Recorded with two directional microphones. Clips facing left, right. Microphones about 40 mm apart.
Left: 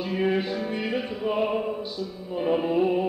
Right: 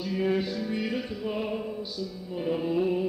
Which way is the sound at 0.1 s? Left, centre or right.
Left.